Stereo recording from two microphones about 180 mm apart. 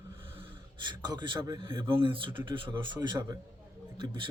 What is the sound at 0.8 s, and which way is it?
Speech, 25° right (ahead or behind).